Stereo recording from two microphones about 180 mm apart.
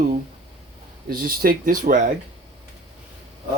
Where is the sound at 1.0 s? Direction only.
55° right (ahead or behind).